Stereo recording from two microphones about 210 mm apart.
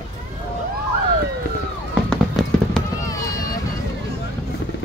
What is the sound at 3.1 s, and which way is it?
Run, 15° left (ahead or behind).